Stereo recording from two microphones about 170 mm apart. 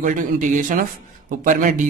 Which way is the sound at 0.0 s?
50° right (ahead or behind).